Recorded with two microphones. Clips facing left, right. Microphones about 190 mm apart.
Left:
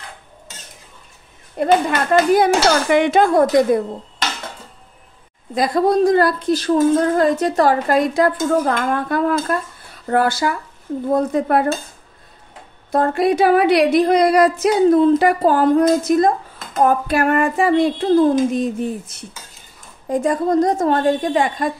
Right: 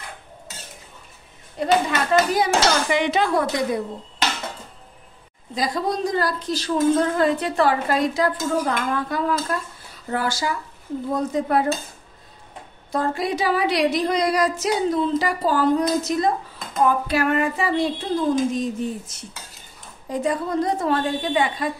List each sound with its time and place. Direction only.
1.6 s dishes: 55° left (ahead or behind)
5.5 s speech: 60° left (ahead or behind)
7.2 s dishes: 45° left (ahead or behind)
10.0 s speech: 55° left (ahead or behind)
12.9 s speech: 60° left (ahead or behind)
20.1 s dishes: 45° left (ahead or behind)